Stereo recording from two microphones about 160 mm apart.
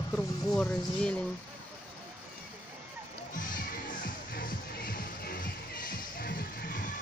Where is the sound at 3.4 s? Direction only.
55° left (ahead or behind).